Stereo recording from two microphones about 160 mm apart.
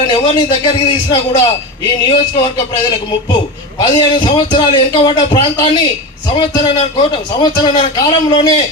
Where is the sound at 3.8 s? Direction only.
30° left (ahead or behind).